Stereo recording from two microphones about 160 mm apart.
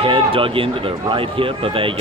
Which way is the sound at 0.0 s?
35° right (ahead or behind).